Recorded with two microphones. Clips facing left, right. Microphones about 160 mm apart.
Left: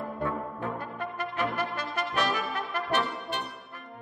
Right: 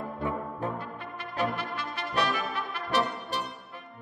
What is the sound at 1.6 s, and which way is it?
Brass instrument, 45° left (ahead or behind).